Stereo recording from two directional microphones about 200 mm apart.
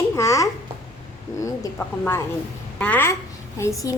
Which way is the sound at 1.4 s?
15° left (ahead or behind).